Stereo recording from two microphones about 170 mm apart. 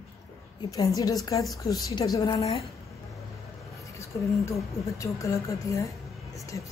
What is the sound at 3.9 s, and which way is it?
A woman's voice, 15° left (ahead or behind).